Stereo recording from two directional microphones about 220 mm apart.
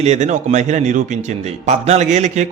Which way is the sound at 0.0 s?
30° right (ahead or behind).